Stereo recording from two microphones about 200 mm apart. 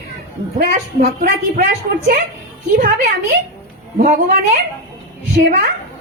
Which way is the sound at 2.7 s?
40° right (ahead or behind).